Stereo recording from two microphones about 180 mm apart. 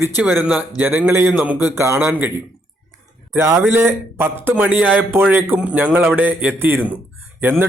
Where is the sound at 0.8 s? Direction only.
10° right (ahead or behind).